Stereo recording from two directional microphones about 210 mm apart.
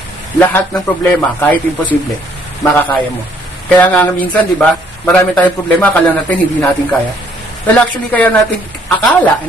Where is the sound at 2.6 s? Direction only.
15° left (ahead or behind).